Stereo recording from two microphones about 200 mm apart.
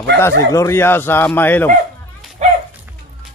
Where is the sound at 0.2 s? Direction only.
15° left (ahead or behind).